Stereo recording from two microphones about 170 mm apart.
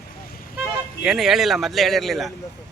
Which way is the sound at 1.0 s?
Centre (ahead or behind).